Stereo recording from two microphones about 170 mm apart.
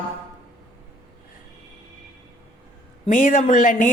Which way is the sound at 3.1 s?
50° left (ahead or behind).